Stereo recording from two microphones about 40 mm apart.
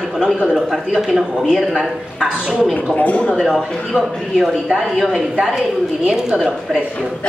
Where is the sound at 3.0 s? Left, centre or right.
Left.